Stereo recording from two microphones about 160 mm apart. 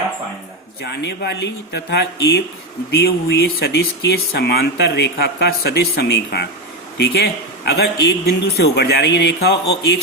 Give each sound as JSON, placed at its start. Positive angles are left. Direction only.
{"t": 0.9, "sound": "a man's voice", "side_deg": 90}